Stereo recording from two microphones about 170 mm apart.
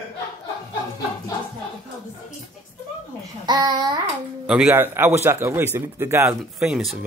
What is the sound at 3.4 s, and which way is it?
Speech, 25° right (ahead or behind).